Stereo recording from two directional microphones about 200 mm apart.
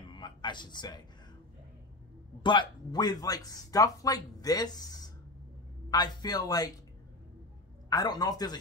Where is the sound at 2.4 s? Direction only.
25° left (ahead or behind).